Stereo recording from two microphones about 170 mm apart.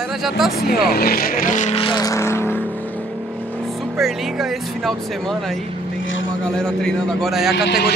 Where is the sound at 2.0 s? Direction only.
20° left (ahead or behind).